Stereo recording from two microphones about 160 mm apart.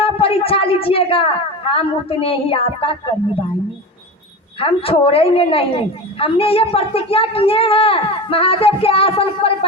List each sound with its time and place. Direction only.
0.0 s a woman's voice: 35° left (ahead or behind)
4.6 s a woman's voice: 35° left (ahead or behind)